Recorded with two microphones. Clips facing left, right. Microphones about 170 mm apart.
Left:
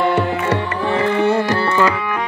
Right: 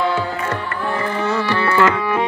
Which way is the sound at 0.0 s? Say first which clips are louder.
Left 3 dB; 65° left (ahead or behind).